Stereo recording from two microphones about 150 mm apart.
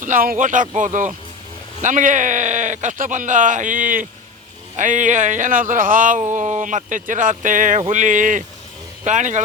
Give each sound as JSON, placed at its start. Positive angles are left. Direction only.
{"t": 0.0, "sound": "speech", "side_deg": -70}